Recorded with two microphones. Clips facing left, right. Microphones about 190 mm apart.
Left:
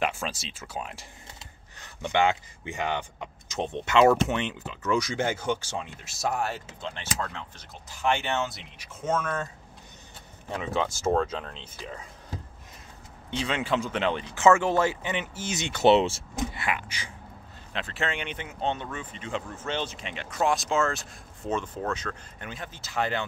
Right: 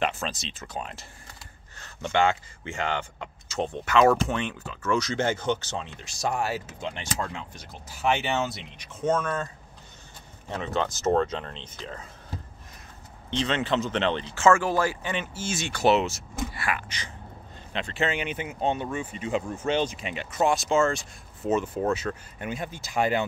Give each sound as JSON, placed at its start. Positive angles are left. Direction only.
{"t": 0.0, "sound": "speech", "side_deg": 10}
{"t": 10.5, "sound": "speech", "side_deg": 10}
{"t": 16.8, "sound": "speech", "side_deg": 10}